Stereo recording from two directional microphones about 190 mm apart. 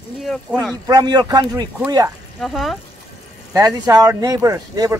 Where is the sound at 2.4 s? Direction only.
Centre (ahead or behind).